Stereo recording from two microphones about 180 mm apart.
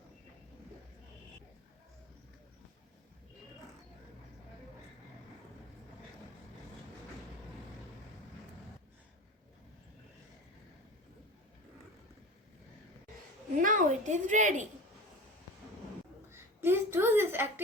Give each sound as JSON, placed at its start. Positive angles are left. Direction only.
{"t": 13.6, "sound": "a woman's voice", "side_deg": -45}
{"t": 16.3, "sound": "a child's voice", "side_deg": -15}